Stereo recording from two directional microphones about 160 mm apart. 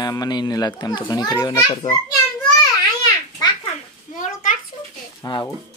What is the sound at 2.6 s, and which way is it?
Babbling, 25° left (ahead or behind).